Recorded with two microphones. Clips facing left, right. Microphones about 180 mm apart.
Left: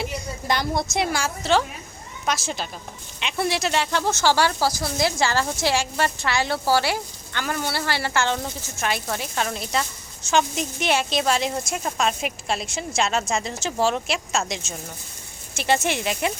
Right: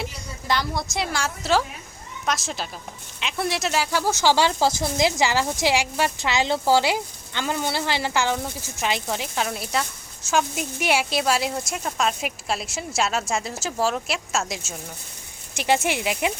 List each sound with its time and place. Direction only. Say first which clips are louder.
0.4 s a woman's voice: left 1 dB; 20° left (ahead or behind)
1.5 s a woman's voice: left 1 dB; 5° right (ahead or behind)